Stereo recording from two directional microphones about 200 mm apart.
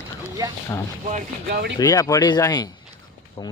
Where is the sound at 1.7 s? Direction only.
15° left (ahead or behind).